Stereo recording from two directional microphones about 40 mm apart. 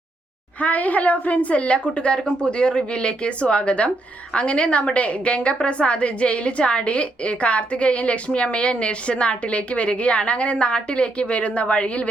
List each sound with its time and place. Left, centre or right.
0.6 s a woman's voice: left